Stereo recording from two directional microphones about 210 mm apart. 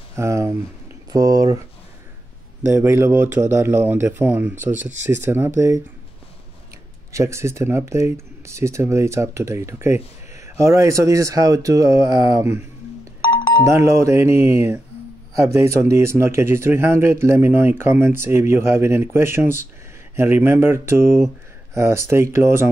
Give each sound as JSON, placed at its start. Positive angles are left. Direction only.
{"t": 0.1, "sound": "speech", "side_deg": -15}
{"t": 2.6, "sound": "speech", "side_deg": -10}
{"t": 7.1, "sound": "speech", "side_deg": -15}
{"t": 13.7, "sound": "speech", "side_deg": -15}